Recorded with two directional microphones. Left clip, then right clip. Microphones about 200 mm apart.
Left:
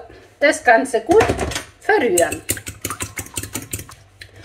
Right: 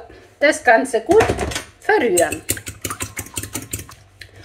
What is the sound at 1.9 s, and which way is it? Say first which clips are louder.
Speech: even; 45° right (ahead or behind).